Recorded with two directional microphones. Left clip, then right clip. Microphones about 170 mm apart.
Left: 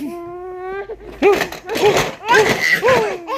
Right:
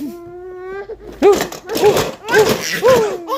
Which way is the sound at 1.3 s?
40° right (ahead or behind).